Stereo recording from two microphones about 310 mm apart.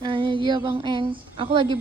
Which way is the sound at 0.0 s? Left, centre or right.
Centre.